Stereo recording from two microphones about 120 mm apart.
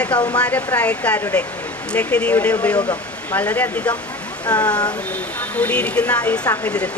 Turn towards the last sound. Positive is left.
turn(degrees=10)  # may be behind; listen again after turning